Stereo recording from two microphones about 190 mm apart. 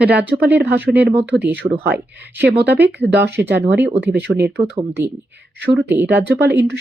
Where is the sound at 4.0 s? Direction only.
10° right (ahead or behind).